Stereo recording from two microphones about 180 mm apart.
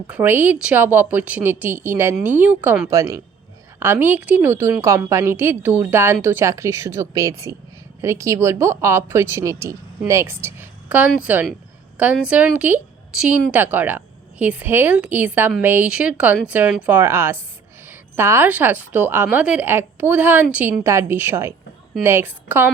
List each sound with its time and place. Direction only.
0.1 s a woman's voice: 10° right (ahead or behind)